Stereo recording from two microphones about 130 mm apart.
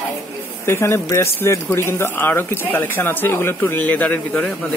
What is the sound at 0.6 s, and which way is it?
Speech, 20° left (ahead or behind).